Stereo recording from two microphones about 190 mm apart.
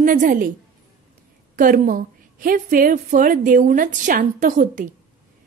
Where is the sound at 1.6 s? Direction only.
45° right (ahead or behind).